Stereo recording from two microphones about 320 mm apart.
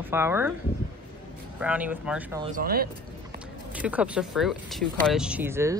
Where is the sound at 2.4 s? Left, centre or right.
Right.